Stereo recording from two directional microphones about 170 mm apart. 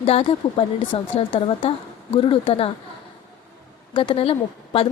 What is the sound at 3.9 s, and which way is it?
Speech, 30° left (ahead or behind).